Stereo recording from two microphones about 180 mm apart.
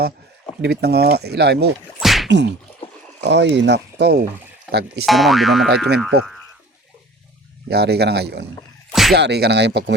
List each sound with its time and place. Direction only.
0.6 s speech: 65° right (ahead or behind)
2.0 s whip: centre (ahead or behind)
2.2 s whip: 75° right (ahead or behind)
3.2 s speech: 70° right (ahead or behind)
5.0 s speech: centre (ahead or behind)
7.7 s speech: 65° right (ahead or behind)
8.9 s a sound: centre (ahead or behind)
9.1 s speech: 65° right (ahead or behind)